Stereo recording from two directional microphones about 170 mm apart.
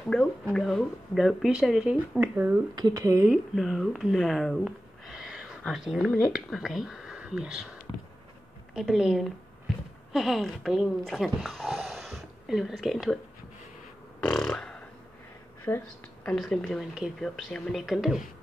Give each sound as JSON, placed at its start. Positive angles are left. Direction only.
{"t": 0.0, "sound": "speech", "side_deg": 5}
{"t": 2.7, "sound": "speech", "side_deg": -20}
{"t": 3.3, "sound": "speech", "side_deg": 0}
{"t": 8.7, "sound": "speech", "side_deg": -5}
{"t": 14.2, "sound": "a sound", "side_deg": 5}
{"t": 15.7, "sound": "speech", "side_deg": 10}